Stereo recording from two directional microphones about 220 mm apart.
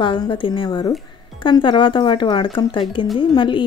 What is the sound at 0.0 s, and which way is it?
A woman's voice, 20° left (ahead or behind).